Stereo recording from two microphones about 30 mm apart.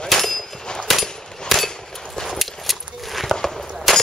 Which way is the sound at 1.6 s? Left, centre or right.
Centre.